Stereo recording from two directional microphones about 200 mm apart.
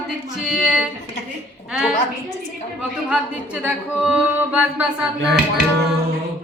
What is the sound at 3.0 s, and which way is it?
Speech, 5° right (ahead or behind).